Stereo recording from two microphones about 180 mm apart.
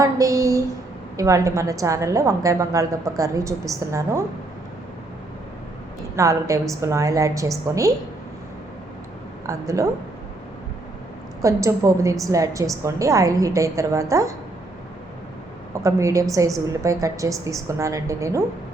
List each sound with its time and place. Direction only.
0.0 s a woman's voice: 20° right (ahead or behind)
6.1 s a woman's voice: 15° right (ahead or behind)
9.5 s a woman's voice: 15° right (ahead or behind)
11.4 s a woman's voice: 15° right (ahead or behind)
15.7 s a woman's voice: 15° right (ahead or behind)